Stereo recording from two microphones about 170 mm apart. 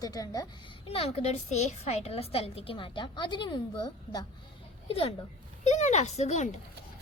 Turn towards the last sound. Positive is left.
turn(degrees=45)  # may be behind; listen again after turning